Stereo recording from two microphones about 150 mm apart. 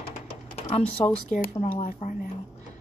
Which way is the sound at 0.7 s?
50° left (ahead or behind).